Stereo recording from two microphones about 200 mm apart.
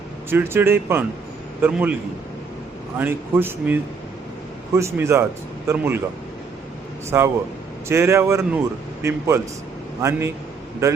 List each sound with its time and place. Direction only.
0.3 s speech: 10° right (ahead or behind)
3.0 s speech: 10° right (ahead or behind)
7.1 s speech: 15° right (ahead or behind)